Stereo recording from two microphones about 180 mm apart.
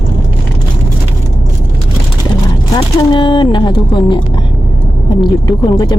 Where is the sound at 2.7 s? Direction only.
25° left (ahead or behind).